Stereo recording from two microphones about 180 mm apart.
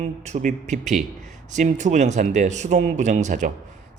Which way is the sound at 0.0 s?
40° right (ahead or behind).